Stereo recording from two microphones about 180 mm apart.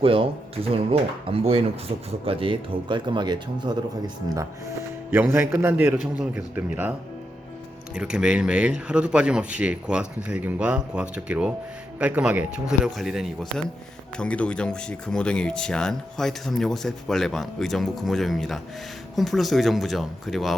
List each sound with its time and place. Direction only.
0.0 s speech: 30° right (ahead or behind)
5.1 s a man's voice: 10° right (ahead or behind)
7.9 s speech: 5° right (ahead or behind)